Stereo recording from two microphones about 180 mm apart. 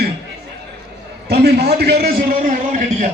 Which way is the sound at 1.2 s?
65° right (ahead or behind).